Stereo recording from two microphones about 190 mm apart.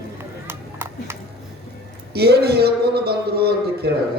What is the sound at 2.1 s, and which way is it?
A man's voice, 55° right (ahead or behind).